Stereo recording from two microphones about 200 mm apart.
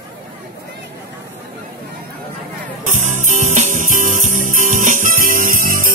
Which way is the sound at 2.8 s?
40° right (ahead or behind).